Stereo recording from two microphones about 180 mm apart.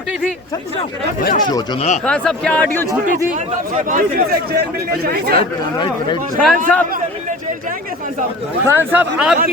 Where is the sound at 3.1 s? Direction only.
45° right (ahead or behind).